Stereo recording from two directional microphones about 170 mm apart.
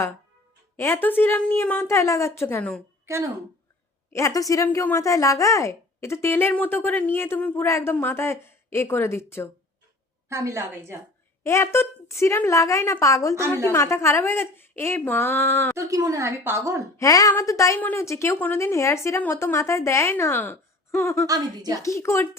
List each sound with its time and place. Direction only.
0.8 s speech: 15° left (ahead or behind)
3.1 s speech: 15° right (ahead or behind)
4.1 s speech: 20° left (ahead or behind)
10.2 s a woman's voice: 15° right (ahead or behind)
11.4 s speech: 15° left (ahead or behind)
15.8 s a woman's voice: 20° right (ahead or behind)
17.0 s speech: 20° left (ahead or behind)
21.2 s a woman's voice: 20° right (ahead or behind)
21.8 s speech: 15° left (ahead or behind)